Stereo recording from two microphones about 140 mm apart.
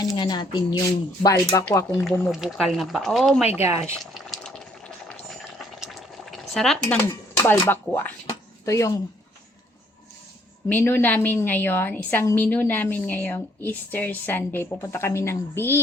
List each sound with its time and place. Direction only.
0.0 s speech: 30° left (ahead or behind)
1.9 s speech: centre (ahead or behind)
3.6 s speech: 20° right (ahead or behind)
3.9 s boiling: centre (ahead or behind)
7.4 s a woman's voice: 15° left (ahead or behind)
8.3 s a sound: 20° left (ahead or behind)
10.7 s a woman's voice: 15° left (ahead or behind)